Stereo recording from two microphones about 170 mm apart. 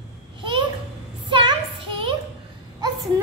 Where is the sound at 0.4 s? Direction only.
30° right (ahead or behind).